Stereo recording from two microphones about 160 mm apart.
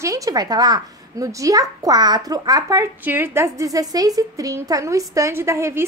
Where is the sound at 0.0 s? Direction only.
20° right (ahead or behind).